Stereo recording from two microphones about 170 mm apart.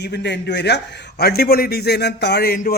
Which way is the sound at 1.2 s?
65° left (ahead or behind).